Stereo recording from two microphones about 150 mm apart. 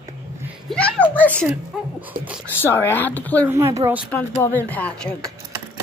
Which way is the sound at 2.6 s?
15° left (ahead or behind).